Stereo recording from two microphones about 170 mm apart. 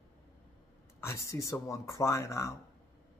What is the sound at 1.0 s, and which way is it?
Speech, 15° left (ahead or behind).